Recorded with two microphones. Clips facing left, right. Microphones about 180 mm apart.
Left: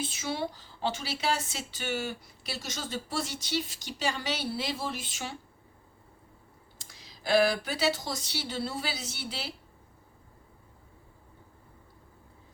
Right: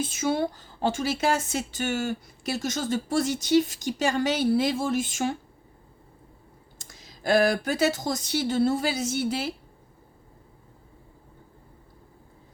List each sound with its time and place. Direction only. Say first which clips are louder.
0.0 s speech: right 7 dB; 45° right (ahead or behind)
6.7 s speech: right 3 dB; 45° right (ahead or behind)